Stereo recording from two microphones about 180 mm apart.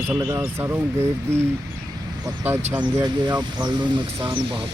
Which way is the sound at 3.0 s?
20° right (ahead or behind).